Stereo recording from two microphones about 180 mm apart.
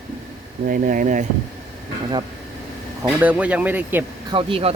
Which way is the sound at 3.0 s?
10° right (ahead or behind).